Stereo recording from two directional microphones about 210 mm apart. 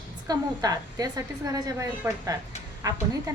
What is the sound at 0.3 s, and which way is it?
A woman's voice, 20° right (ahead or behind).